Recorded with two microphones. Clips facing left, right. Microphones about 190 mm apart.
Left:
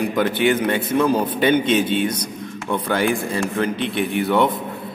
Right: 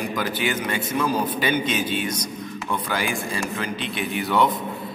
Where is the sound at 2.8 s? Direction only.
60° left (ahead or behind).